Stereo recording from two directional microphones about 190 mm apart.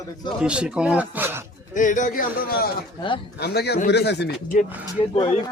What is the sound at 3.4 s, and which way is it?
Speech, 60° left (ahead or behind).